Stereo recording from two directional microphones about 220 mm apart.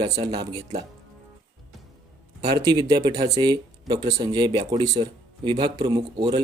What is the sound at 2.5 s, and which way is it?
Speech, 15° right (ahead or behind).